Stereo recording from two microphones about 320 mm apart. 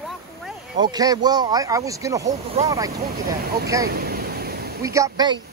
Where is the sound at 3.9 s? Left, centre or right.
Right.